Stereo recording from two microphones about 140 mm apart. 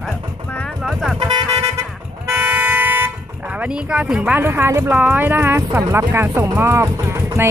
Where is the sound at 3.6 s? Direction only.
10° right (ahead or behind).